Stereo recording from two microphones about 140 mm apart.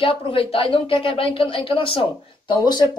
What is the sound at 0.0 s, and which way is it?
A woman's voice, 40° left (ahead or behind).